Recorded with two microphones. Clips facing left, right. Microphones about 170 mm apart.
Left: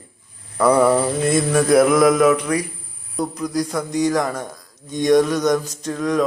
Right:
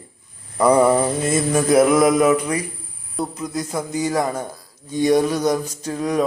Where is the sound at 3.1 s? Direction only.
5° right (ahead or behind).